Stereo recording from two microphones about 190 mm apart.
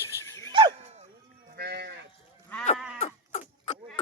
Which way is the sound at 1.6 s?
60° right (ahead or behind).